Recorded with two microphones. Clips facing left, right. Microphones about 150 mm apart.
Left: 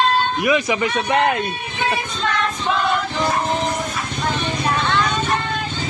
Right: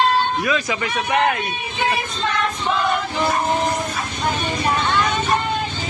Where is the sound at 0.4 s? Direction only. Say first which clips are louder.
Left 4 dB; 20° left (ahead or behind).